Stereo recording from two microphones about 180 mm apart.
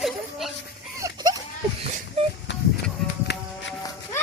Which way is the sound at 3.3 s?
70° left (ahead or behind).